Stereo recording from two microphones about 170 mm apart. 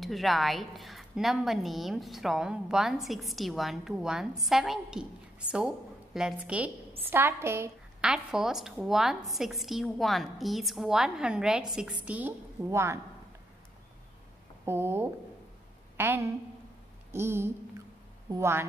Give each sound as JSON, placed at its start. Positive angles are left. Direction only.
{"t": 0.0, "sound": "a woman's voice", "side_deg": 0}
{"t": 8.0, "sound": "a woman's voice", "side_deg": -5}
{"t": 14.6, "sound": "a woman's voice", "side_deg": -15}